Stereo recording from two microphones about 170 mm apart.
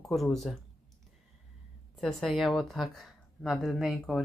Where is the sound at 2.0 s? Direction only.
Centre (ahead or behind).